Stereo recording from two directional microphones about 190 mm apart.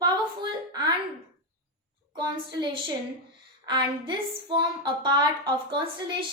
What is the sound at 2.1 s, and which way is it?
A woman's voice, 25° right (ahead or behind).